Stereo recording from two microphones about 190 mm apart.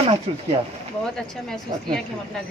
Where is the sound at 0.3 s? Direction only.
35° right (ahead or behind).